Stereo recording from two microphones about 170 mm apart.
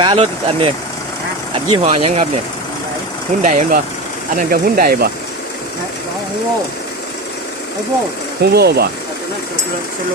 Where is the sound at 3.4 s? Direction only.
45° right (ahead or behind).